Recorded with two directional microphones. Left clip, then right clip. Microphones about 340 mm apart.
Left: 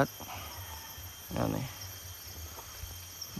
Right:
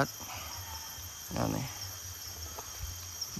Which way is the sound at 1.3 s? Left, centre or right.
Centre.